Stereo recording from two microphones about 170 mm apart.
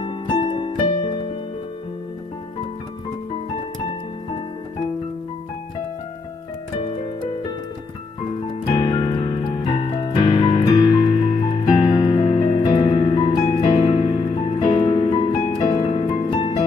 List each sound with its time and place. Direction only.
0.0 s music: 25° left (ahead or behind)
8.7 s music: 25° left (ahead or behind)